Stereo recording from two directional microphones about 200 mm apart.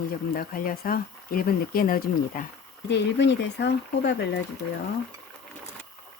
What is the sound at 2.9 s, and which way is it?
Speech, 60° left (ahead or behind).